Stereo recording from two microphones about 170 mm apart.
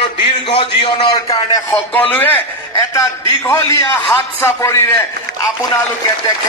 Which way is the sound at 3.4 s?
15° left (ahead or behind).